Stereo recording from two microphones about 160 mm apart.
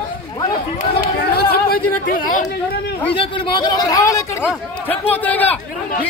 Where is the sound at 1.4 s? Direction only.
70° left (ahead or behind).